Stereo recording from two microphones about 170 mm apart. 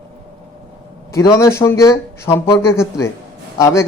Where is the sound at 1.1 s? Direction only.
20° left (ahead or behind).